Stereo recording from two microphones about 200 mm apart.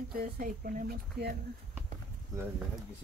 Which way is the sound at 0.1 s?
45° right (ahead or behind).